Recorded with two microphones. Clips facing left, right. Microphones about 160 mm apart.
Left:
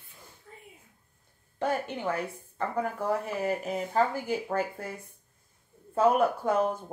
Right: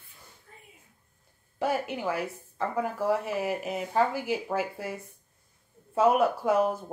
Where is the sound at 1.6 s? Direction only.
5° right (ahead or behind).